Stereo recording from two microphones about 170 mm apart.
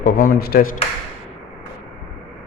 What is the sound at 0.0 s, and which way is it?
Speech, 55° left (ahead or behind).